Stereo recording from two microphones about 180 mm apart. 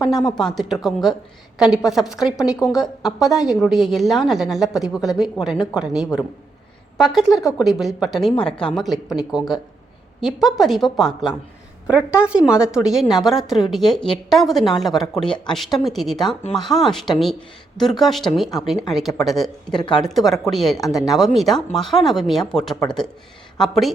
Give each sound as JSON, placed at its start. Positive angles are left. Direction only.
{"t": 0.2, "sound": "speech", "side_deg": 25}
{"t": 0.7, "sound": "a woman's voice", "side_deg": 0}